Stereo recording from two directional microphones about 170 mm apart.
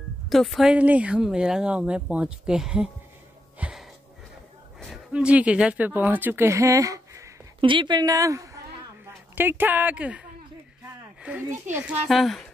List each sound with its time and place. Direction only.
0.3 s speech: centre (ahead or behind)
3.5 s a sound: 5° right (ahead or behind)
4.7 s speech: centre (ahead or behind)
11.7 s a child's voice: 10° right (ahead or behind)
12.1 s speech: centre (ahead or behind)